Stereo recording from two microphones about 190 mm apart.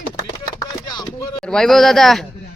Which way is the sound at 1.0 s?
20° left (ahead or behind).